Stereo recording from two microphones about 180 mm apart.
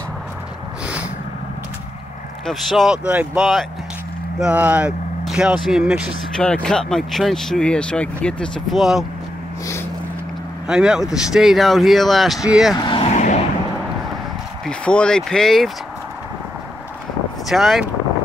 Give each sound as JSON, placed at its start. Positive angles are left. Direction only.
{"t": 2.4, "sound": "speech", "side_deg": 0}
{"t": 10.7, "sound": "speech", "side_deg": -5}
{"t": 12.8, "sound": "vehicle", "side_deg": 30}
{"t": 13.1, "sound": "a sound", "side_deg": 40}
{"t": 14.7, "sound": "speech", "side_deg": 5}
{"t": 17.5, "sound": "speech", "side_deg": 0}